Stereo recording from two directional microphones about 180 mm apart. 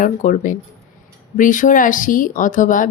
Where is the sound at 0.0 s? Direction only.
45° left (ahead or behind).